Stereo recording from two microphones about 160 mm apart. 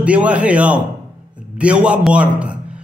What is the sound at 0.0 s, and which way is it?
A man's voice, 10° right (ahead or behind).